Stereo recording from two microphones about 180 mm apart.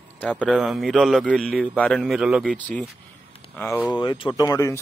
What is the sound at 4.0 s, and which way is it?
Speech, 25° left (ahead or behind).